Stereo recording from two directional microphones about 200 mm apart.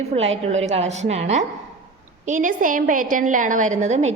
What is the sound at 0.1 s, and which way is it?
A woman's voice, 40° right (ahead or behind).